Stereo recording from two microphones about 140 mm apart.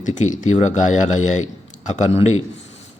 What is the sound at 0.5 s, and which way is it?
A man's voice, 60° left (ahead or behind).